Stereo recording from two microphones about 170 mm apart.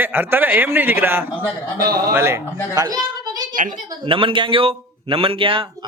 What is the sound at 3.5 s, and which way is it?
Speech, 50° right (ahead or behind).